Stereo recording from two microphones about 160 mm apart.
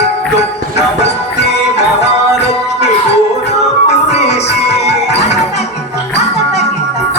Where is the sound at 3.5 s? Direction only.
40° left (ahead or behind).